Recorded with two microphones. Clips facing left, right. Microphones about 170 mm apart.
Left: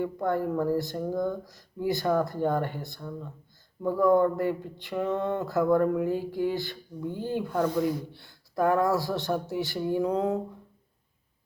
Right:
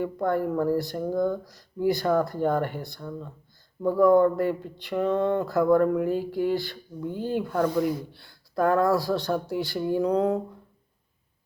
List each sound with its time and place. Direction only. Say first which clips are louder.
0.3 s speech: right 2 dB; 15° left (ahead or behind)
3.8 s a sound: right 3 dB; 15° left (ahead or behind)
7.6 s speech: right 2 dB; 20° left (ahead or behind)